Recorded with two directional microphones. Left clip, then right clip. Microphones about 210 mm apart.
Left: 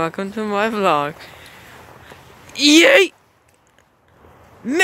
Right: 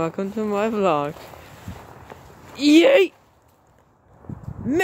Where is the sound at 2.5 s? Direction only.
Centre (ahead or behind).